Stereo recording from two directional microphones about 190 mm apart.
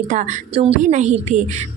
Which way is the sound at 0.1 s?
40° right (ahead or behind).